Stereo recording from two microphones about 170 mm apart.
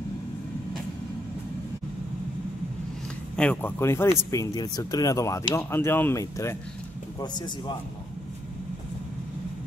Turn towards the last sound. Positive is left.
turn(degrees=25)  # may be behind; listen again after turning